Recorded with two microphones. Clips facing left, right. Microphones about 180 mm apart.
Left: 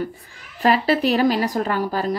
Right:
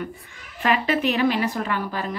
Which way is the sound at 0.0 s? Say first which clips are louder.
Left 4 dB; 35° left (ahead or behind).